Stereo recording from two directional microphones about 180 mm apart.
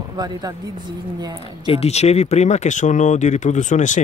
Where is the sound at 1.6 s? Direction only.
35° left (ahead or behind).